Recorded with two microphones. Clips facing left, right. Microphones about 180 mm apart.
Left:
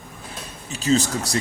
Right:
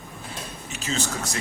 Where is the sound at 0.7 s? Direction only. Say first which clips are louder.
Left 9 dB; 35° left (ahead or behind).